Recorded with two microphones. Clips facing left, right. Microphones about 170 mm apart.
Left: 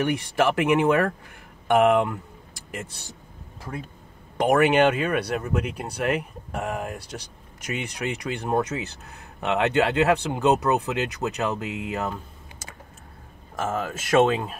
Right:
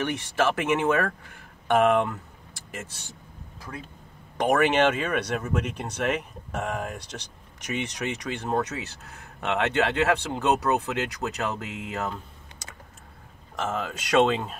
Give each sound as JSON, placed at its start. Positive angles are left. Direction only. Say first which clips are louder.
{"t": 0.0, "sound": "speech", "louder": "left 3 dB", "side_deg": 10}
{"t": 4.4, "sound": "speech", "louder": "left 3 dB", "side_deg": 10}
{"t": 13.6, "sound": "speech", "louder": "left 2 dB", "side_deg": 5}